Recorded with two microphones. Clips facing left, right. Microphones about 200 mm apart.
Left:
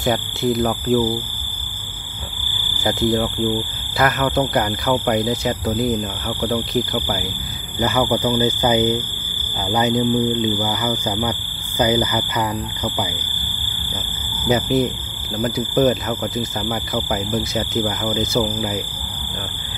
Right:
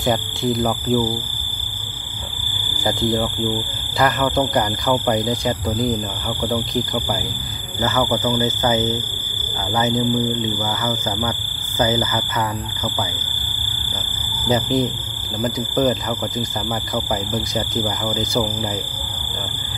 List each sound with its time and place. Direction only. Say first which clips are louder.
0.0 s speech: left 1 dB; centre (ahead or behind)
3.0 s speech: left 3 dB; centre (ahead or behind)
7.8 s speech: left 1 dB; 15° left (ahead or behind)
14.5 s speech: left 1 dB; 5° left (ahead or behind)